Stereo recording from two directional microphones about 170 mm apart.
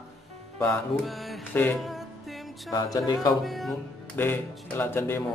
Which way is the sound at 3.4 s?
Centre (ahead or behind).